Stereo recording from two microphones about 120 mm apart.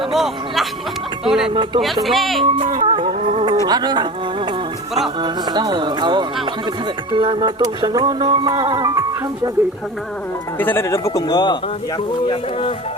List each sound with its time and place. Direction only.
0.1 s speech: centre (ahead or behind)
1.5 s music: 40° right (ahead or behind)
1.8 s speech: centre (ahead or behind)
2.4 s a sound: 45° right (ahead or behind)
3.7 s music: 35° right (ahead or behind)
10.6 s a man's voice: 20° left (ahead or behind); by 12.7 s 45° left (ahead or behind)